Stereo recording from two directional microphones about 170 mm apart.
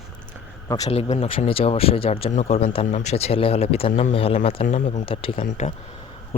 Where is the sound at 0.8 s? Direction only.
40° left (ahead or behind).